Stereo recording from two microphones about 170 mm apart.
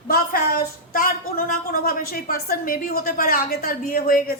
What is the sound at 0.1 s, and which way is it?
A woman's voice, 65° left (ahead or behind).